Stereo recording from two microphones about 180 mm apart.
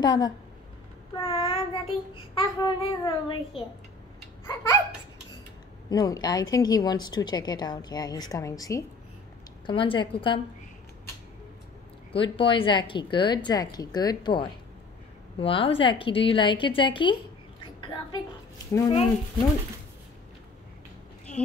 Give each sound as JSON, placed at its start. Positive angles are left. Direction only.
{"t": 0.0, "sound": "a woman's voice", "side_deg": 25}
{"t": 5.9, "sound": "a woman's voice", "side_deg": 20}
{"t": 12.1, "sound": "a woman's voice", "side_deg": 30}